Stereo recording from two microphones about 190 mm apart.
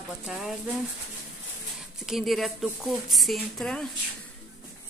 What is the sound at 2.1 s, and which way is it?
Speech, centre (ahead or behind).